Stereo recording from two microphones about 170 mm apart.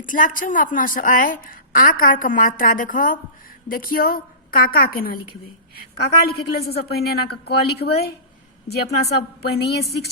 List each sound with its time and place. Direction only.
0.0 s a woman's voice: 50° left (ahead or behind); by 10.1 s 70° left (ahead or behind)